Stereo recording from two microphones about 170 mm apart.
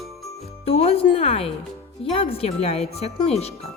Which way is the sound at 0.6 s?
35° left (ahead or behind).